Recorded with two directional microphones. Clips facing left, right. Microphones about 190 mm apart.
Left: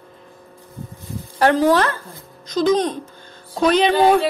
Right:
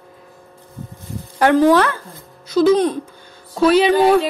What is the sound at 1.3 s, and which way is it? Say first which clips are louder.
A child's voice: right 3 dB; 15° right (ahead or behind).